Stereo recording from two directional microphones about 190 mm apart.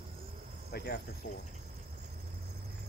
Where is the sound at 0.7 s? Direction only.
60° left (ahead or behind).